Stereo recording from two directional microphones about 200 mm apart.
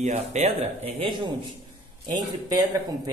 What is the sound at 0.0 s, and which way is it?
Speech, 35° right (ahead or behind).